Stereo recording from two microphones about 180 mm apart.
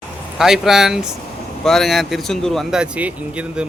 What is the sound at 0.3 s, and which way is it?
Speech, centre (ahead or behind).